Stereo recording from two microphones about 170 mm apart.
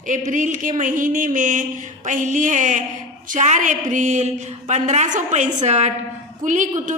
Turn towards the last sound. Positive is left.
turn(degrees=-45)  # may be behind; listen again after turning